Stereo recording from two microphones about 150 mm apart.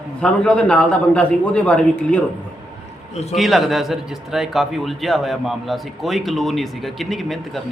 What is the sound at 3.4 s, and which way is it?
A man's voice, centre (ahead or behind).